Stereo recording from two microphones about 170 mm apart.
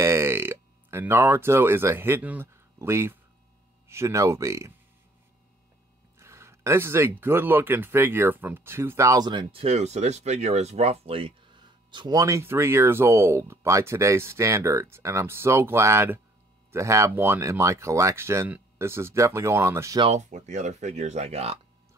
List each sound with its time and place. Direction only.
0.0 s burping: 15° right (ahead or behind)
3.9 s speech: 15° right (ahead or behind)
6.1 s speech: 15° right (ahead or behind)
20.1 s speech: 45° right (ahead or behind)